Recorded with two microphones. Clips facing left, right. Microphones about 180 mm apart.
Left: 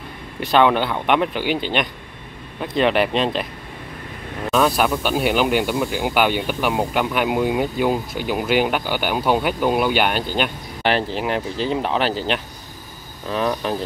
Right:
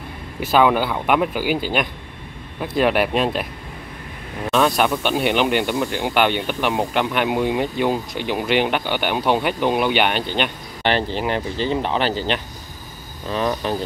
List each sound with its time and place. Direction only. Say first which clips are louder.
0.4 s speech: even; 5° right (ahead or behind)
4.5 s speech: even; centre (ahead or behind)